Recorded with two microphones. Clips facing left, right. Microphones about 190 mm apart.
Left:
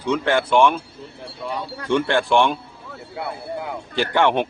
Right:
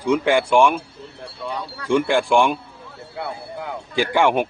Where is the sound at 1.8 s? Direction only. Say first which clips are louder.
Right 1 dB; 10° right (ahead or behind).